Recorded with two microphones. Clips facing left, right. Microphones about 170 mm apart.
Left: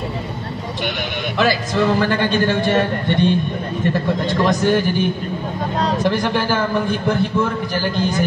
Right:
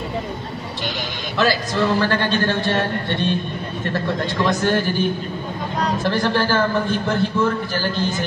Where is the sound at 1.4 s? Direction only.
15° left (ahead or behind).